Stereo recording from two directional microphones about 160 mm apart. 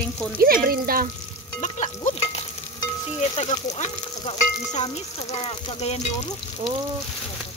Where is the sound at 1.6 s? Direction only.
45° left (ahead or behind).